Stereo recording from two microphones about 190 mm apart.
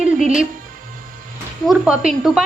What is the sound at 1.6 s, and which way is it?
Speech, centre (ahead or behind).